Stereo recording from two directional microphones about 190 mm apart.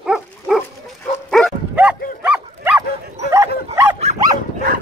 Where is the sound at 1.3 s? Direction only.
Centre (ahead or behind).